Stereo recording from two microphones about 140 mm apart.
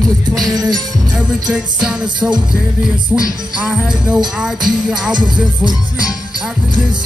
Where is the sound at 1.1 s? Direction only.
5° right (ahead or behind).